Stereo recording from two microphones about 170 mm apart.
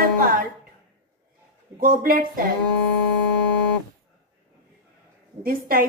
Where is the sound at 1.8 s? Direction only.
55° right (ahead or behind).